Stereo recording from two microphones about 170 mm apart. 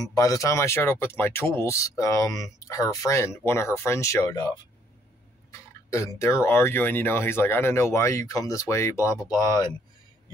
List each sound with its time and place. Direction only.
0.0 s speech: 20° left (ahead or behind)
5.9 s speech: 15° left (ahead or behind)